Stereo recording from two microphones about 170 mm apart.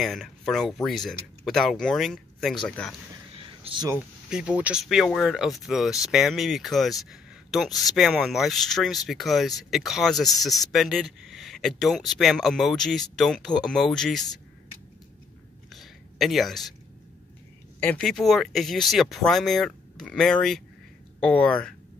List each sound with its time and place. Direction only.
0.0 s speech: centre (ahead or behind)
3.6 s speech: 30° right (ahead or behind)
3.9 s speech: 5° right (ahead or behind)
15.7 s a sound: centre (ahead or behind)
17.7 s speech: 5° left (ahead or behind)